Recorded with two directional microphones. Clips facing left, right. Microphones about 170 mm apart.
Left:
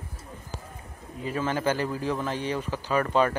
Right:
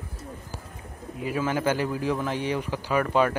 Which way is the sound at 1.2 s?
10° right (ahead or behind).